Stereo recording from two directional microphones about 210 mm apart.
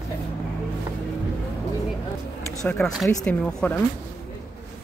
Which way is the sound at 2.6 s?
5° left (ahead or behind).